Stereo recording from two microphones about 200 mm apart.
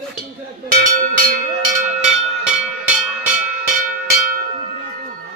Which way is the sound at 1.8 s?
5° right (ahead or behind).